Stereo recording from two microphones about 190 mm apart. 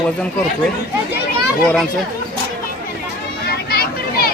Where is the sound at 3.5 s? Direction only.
55° left (ahead or behind).